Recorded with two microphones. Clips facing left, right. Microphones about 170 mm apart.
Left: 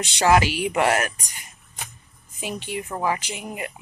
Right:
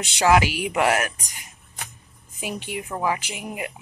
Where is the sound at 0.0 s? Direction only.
5° right (ahead or behind).